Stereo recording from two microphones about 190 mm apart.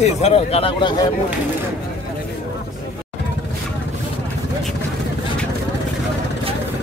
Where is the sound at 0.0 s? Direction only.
35° left (ahead or behind).